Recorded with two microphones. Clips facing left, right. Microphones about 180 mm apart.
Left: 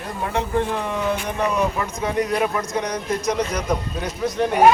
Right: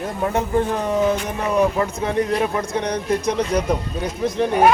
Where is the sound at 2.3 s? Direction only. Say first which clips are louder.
Right 1 dB; 30° right (ahead or behind).